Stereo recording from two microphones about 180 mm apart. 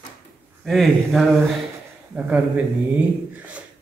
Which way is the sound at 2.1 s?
10° right (ahead or behind).